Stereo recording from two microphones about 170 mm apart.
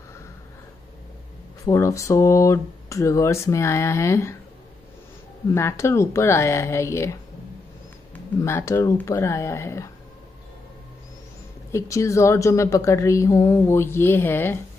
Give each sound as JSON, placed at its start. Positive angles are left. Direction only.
{"t": 1.7, "sound": "a woman's voice", "side_deg": 20}
{"t": 5.5, "sound": "a woman's voice", "side_deg": 15}
{"t": 8.4, "sound": "a woman's voice", "side_deg": 15}
{"t": 11.7, "sound": "a woman's voice", "side_deg": 15}